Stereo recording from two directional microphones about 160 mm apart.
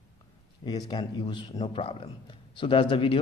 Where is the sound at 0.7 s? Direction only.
25° left (ahead or behind).